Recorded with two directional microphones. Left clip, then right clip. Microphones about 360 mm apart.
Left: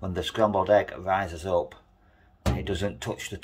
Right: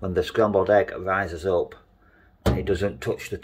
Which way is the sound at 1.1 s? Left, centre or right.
Centre.